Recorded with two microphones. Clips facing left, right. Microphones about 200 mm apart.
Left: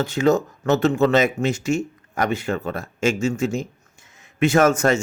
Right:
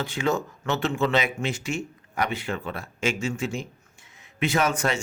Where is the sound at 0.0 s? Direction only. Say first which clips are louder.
Left 7 dB; 40° left (ahead or behind).